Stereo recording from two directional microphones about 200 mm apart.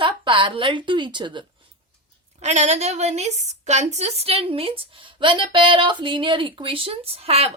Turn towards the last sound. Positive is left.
turn(degrees=-30)  # may be behind; listen again after turning